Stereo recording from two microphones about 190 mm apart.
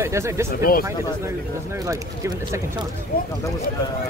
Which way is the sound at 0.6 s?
50° left (ahead or behind).